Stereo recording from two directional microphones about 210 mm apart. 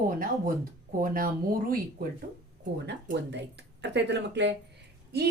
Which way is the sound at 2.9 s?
55° right (ahead or behind).